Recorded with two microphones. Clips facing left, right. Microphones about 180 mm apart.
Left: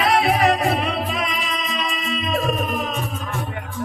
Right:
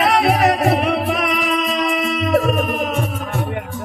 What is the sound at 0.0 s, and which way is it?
Music, 70° right (ahead or behind).